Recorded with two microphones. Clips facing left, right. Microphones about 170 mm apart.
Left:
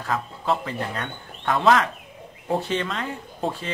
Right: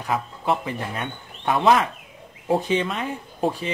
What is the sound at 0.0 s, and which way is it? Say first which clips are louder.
Speech: right 2 dB; 15° right (ahead or behind).